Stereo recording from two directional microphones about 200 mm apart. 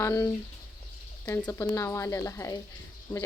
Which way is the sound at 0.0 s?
15° left (ahead or behind).